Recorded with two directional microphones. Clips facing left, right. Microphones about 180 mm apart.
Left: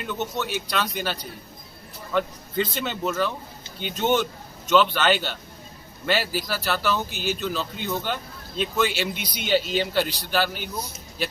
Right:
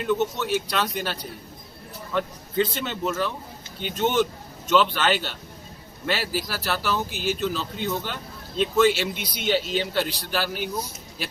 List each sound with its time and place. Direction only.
0.0 s speech: centre (ahead or behind)